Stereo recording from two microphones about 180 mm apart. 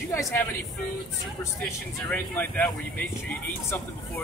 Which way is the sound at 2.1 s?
10° left (ahead or behind).